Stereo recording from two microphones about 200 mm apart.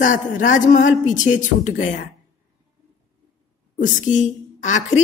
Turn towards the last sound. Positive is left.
turn(degrees=40)  # may be behind; listen again after turning